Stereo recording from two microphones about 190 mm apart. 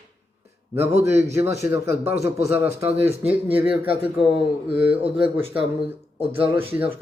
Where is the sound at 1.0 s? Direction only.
15° right (ahead or behind).